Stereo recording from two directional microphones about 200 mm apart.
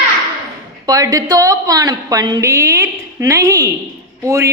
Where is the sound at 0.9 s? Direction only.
20° right (ahead or behind).